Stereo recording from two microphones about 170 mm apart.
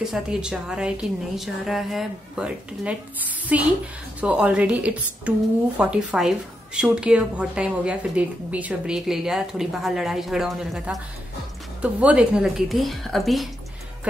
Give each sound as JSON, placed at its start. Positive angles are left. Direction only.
{"t": 0.0, "sound": "a woman's voice", "side_deg": -5}